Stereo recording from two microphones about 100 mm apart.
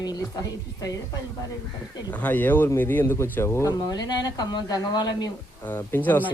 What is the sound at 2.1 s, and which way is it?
Speech, 15° left (ahead or behind).